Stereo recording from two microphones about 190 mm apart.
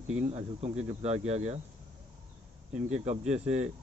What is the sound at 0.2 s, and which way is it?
Speech, 35° right (ahead or behind).